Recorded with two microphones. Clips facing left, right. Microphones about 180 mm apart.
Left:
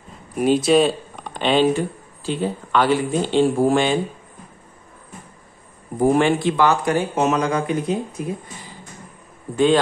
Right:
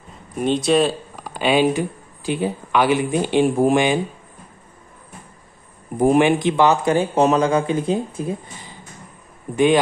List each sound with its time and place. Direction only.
0.4 s speech: 5° left (ahead or behind); by 4.0 s 15° right (ahead or behind)
5.9 s speech: 15° right (ahead or behind)